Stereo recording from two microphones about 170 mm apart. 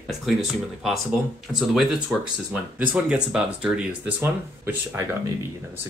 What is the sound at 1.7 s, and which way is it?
Speech, centre (ahead or behind).